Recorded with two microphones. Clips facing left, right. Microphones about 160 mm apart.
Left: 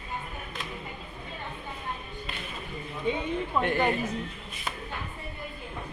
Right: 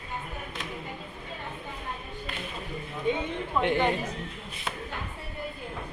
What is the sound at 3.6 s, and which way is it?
Speech, 20° right (ahead or behind).